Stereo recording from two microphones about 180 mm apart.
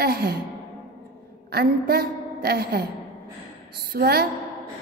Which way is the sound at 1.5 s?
60° right (ahead or behind).